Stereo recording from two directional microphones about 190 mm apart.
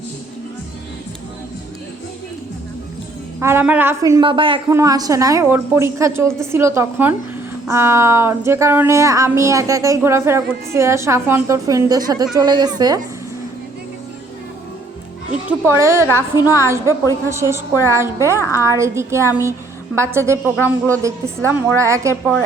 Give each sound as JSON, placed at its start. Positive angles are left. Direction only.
{"t": 3.4, "sound": "a woman's voice", "side_deg": -10}
{"t": 15.4, "sound": "speech", "side_deg": -15}
{"t": 18.3, "sound": "a woman's voice", "side_deg": 15}
{"t": 18.6, "sound": "speech", "side_deg": -15}
{"t": 21.5, "sound": "speech", "side_deg": -15}